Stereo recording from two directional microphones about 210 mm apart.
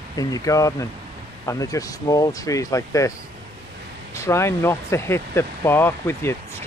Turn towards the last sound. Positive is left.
turn(degrees=10)  # may be behind; listen again after turning